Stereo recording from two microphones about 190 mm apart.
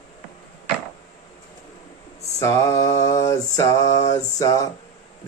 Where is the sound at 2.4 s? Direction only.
15° left (ahead or behind).